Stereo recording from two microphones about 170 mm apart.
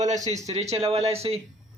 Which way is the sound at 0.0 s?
45° right (ahead or behind).